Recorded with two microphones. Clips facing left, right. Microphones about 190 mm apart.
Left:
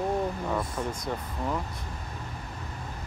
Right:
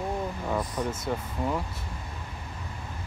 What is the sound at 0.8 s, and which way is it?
Speech, 5° right (ahead or behind).